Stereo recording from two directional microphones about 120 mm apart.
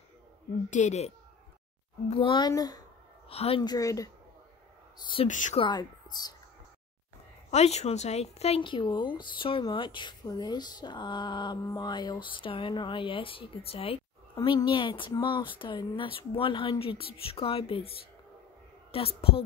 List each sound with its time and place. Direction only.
0.7 s speech: 80° left
2.0 s speech: 50° left (ahead or behind)
2.3 s speech: 35° left (ahead or behind)
3.3 s a woman's voice: 55° left (ahead or behind)
3.6 s speech: 30° left (ahead or behind)
4.9 s speech: 40° left (ahead or behind)
5.2 s speech: 80° left
5.6 s speech: 40° left (ahead or behind)
7.5 s speech: 65° left (ahead or behind)
8.6 s speech: 40° left (ahead or behind)
14.3 s speech: 35° left (ahead or behind)